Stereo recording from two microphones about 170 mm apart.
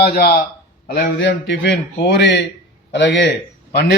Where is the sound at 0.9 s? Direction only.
90° left.